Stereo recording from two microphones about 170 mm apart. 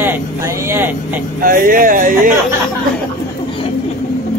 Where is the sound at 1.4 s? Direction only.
55° right (ahead or behind).